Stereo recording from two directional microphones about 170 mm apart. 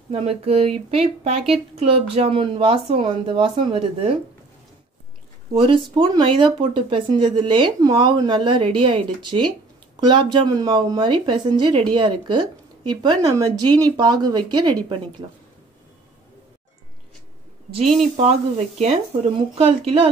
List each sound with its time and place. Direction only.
0.1 s speech: 35° right (ahead or behind)
5.5 s speech: 30° right (ahead or behind)
17.9 s speech: 40° right (ahead or behind)